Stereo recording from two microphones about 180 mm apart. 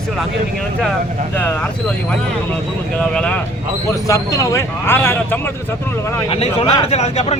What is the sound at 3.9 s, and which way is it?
Speech, 20° left (ahead or behind).